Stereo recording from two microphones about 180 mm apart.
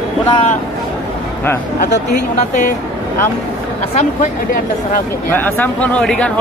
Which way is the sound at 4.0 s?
45° left (ahead or behind).